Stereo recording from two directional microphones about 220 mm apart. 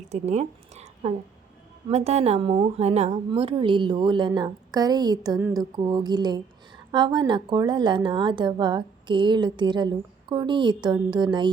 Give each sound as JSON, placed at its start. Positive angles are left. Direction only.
{"t": 0.1, "sound": "a woman's voice", "side_deg": -30}